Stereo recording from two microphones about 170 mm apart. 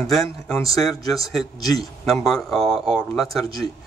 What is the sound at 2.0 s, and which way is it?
Speech, centre (ahead or behind).